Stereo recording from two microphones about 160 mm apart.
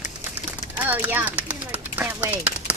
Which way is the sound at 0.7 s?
10° right (ahead or behind).